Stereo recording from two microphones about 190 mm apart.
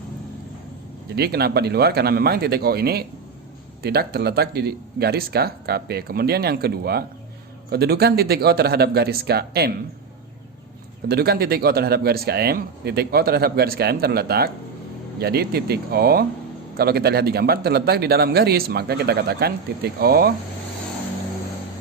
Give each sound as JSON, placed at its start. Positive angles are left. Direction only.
{"t": 1.1, "sound": "a man's voice", "side_deg": -55}
{"t": 11.1, "sound": "a man's voice", "side_deg": -55}